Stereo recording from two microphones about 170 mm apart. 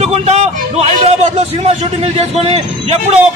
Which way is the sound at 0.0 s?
40° right (ahead or behind).